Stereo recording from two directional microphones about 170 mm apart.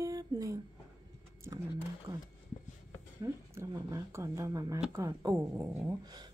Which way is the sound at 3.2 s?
20° right (ahead or behind).